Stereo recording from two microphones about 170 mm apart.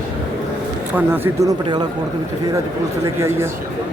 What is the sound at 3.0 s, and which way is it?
Speech, 15° right (ahead or behind).